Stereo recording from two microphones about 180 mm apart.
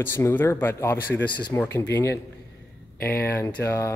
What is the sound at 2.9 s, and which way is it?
Speech, 55° left (ahead or behind).